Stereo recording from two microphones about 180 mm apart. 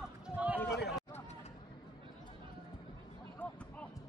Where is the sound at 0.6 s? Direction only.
65° left (ahead or behind).